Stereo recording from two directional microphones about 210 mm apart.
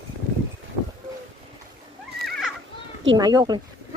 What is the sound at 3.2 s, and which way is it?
Speech, 20° right (ahead or behind).